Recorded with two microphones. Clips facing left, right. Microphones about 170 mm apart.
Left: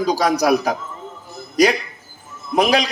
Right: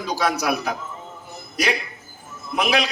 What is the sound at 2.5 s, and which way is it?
Speech, 40° left (ahead or behind).